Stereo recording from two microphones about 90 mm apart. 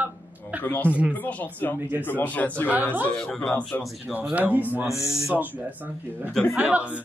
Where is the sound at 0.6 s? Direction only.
20° left (ahead or behind).